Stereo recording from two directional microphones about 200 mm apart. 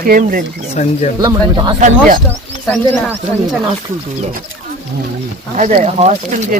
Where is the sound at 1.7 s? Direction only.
40° right (ahead or behind).